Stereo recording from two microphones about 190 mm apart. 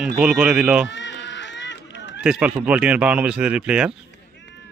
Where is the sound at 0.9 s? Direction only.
70° left (ahead or behind).